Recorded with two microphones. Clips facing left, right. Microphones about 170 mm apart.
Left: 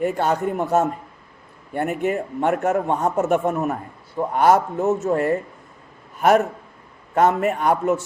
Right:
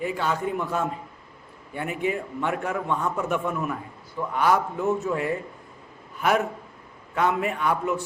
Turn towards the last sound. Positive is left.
turn(degrees=45)  # may be behind; listen again after turning